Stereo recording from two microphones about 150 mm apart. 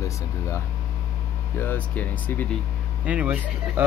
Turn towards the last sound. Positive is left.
turn(degrees=-10)  # may be behind; listen again after turning